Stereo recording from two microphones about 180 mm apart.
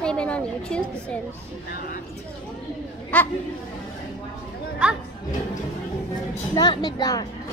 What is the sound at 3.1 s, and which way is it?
Speech, 5° left (ahead or behind).